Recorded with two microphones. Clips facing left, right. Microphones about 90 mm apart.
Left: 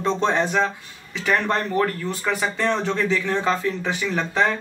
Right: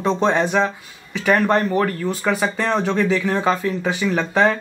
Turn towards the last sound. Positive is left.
turn(degrees=-20)  # may be behind; listen again after turning